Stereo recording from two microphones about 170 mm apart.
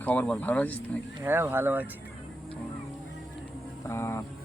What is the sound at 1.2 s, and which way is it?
Speech, 15° right (ahead or behind).